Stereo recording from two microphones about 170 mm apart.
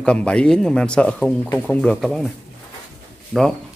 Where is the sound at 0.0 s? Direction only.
5° left (ahead or behind).